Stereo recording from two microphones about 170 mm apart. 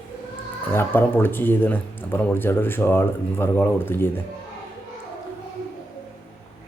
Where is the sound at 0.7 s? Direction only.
10° left (ahead or behind).